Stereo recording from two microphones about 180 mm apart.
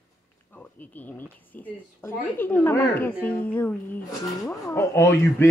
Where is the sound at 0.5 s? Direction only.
10° left (ahead or behind).